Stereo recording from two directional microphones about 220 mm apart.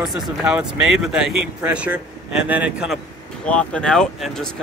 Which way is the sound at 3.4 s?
5° left (ahead or behind).